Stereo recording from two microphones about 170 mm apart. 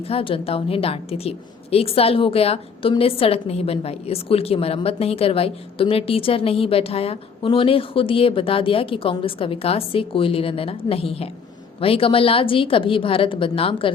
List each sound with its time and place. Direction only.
0.0 s a woman's voice: 35° left (ahead or behind)